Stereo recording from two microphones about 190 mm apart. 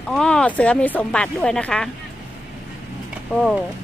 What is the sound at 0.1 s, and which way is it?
Speech, 5° left (ahead or behind).